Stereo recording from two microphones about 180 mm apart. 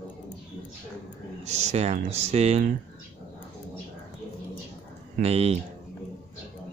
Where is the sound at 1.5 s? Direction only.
35° right (ahead or behind).